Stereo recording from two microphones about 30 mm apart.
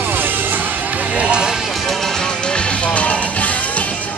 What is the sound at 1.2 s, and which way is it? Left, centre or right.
Music, right.